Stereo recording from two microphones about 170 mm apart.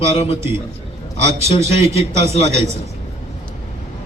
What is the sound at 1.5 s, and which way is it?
A man's voice, 35° left (ahead or behind).